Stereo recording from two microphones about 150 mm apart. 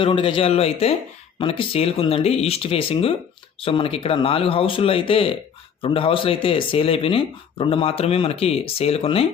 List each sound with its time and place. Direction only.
0.0 s speech: 35° left (ahead or behind)